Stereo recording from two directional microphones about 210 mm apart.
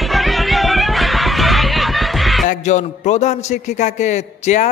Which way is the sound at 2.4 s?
35° left (ahead or behind).